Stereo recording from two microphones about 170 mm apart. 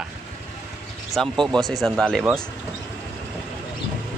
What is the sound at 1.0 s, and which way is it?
Speech, centre (ahead or behind).